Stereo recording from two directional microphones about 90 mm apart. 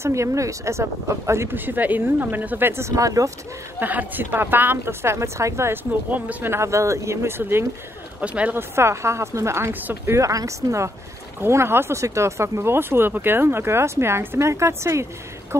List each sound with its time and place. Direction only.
0.0 s speech: 35° right (ahead or behind)
3.8 s speech: 20° right (ahead or behind)
8.2 s speech: 15° right (ahead or behind)
8.5 s speech: 30° right (ahead or behind)
10.1 s speech: 35° right (ahead or behind)